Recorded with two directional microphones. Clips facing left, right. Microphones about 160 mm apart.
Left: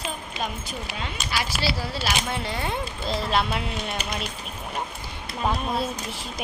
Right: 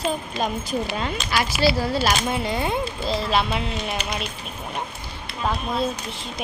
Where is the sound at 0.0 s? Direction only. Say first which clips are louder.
Right 7 dB; 40° right (ahead or behind).